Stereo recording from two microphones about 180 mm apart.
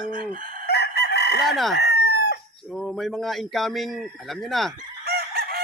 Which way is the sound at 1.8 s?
70° left (ahead or behind).